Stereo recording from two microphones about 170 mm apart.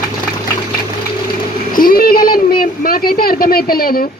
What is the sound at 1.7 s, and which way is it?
A woman's voice, 60° left (ahead or behind).